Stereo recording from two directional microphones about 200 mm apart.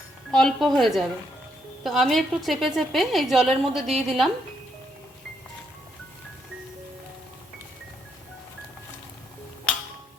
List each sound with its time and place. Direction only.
0.3 s a woman's voice: 5° left (ahead or behind)